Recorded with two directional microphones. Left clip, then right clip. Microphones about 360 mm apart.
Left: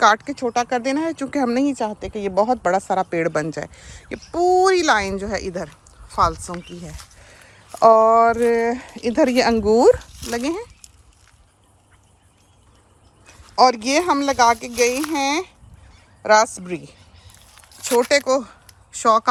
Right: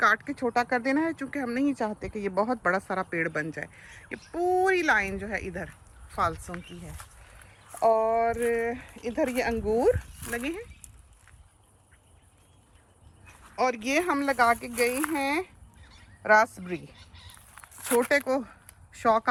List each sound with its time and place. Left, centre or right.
0.0 s a woman's voice: centre
1.8 s a woman's voice: centre
8.3 s speech: left
8.6 s a woman's voice: centre
13.7 s a woman's voice: centre
17.5 s a sound: centre